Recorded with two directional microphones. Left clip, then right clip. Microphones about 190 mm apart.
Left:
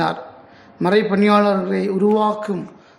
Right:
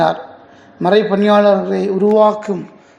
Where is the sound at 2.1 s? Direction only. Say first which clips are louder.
Right 6 dB; 5° right (ahead or behind).